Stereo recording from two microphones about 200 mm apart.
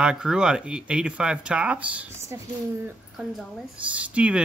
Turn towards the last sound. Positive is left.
turn(degrees=-5)  # may be behind; listen again after turning